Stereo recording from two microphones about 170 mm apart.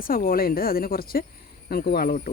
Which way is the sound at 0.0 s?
55° left (ahead or behind).